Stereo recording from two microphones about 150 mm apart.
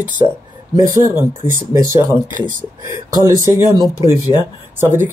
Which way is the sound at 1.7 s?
20° right (ahead or behind).